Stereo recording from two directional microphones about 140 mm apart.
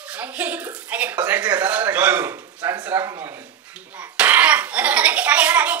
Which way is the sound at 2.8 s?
15° right (ahead or behind).